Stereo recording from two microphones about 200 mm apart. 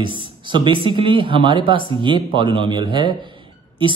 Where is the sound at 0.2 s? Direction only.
25° right (ahead or behind).